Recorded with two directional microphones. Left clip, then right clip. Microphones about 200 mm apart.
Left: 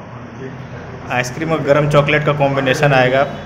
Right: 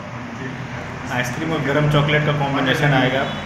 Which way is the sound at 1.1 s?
50° left (ahead or behind).